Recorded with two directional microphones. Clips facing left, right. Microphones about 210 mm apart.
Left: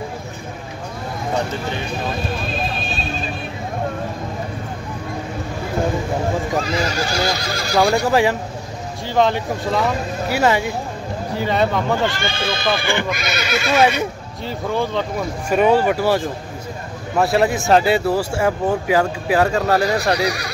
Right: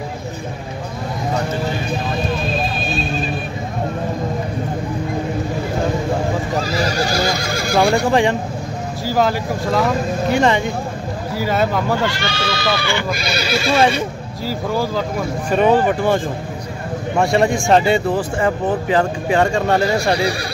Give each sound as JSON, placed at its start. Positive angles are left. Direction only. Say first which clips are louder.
{"t": 6.6, "sound": "speech", "louder": "right 2 dB", "side_deg": -35}
{"t": 7.8, "sound": "speech", "louder": "right 1 dB", "side_deg": 5}
{"t": 11.3, "sound": "speech", "louder": "even", "side_deg": -5}
{"t": 12.2, "sound": "speech", "louder": "right 1 dB", "side_deg": 50}
{"t": 13.1, "sound": "neigh", "louder": "right 2 dB", "side_deg": -30}
{"t": 14.4, "sound": "speech", "louder": "right 1 dB", "side_deg": -5}
{"t": 17.2, "sound": "speech", "louder": "right 1 dB", "side_deg": 5}
{"t": 20.2, "sound": "speech", "louder": "right 1 dB", "side_deg": -30}